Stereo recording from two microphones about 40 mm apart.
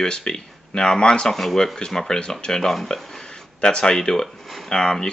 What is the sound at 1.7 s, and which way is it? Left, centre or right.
Speech, centre.